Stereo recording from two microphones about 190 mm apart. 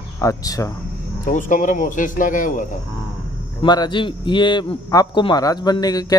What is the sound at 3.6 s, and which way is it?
A man's voice, 20° left (ahead or behind).